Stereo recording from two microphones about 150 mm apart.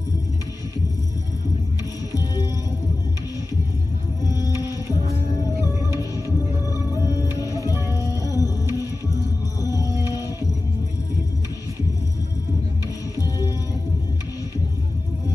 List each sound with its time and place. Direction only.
2.1 s music: 25° left (ahead or behind)
4.4 s music: 20° right (ahead or behind)
7.6 s music: 20° left (ahead or behind)
9.6 s music: 25° left (ahead or behind)